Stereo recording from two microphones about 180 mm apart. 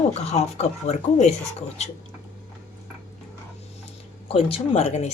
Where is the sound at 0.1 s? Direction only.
35° left (ahead or behind).